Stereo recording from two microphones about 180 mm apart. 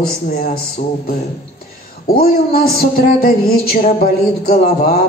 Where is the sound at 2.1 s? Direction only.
55° left (ahead or behind).